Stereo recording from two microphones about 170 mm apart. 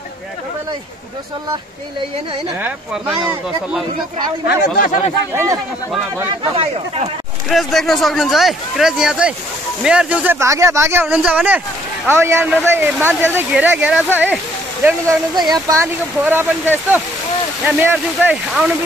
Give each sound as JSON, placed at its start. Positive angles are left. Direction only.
{"t": 4.5, "sound": "speech", "side_deg": 60}
{"t": 5.3, "sound": "speech", "side_deg": -15}
{"t": 6.5, "sound": "speech", "side_deg": -35}
{"t": 7.4, "sound": "speech", "side_deg": 0}
{"t": 15.3, "sound": "speech", "side_deg": -25}